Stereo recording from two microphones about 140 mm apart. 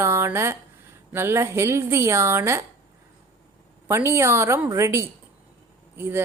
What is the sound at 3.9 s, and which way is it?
A woman's voice, 20° right (ahead or behind).